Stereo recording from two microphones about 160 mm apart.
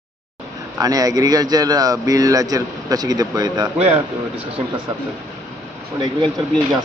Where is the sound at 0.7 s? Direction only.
20° right (ahead or behind).